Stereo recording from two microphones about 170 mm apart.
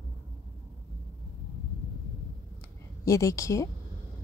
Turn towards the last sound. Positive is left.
turn(degrees=20)  # may be behind; listen again after turning